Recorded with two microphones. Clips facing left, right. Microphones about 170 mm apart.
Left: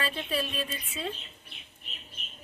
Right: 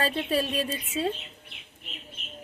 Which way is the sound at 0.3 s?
40° right (ahead or behind).